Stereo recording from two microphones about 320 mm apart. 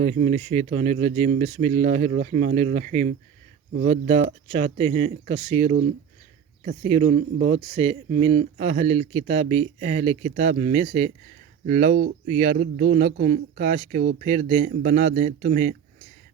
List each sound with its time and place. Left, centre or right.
0.0 s speech: right